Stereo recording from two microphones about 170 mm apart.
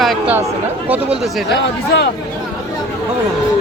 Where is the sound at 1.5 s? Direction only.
85° left.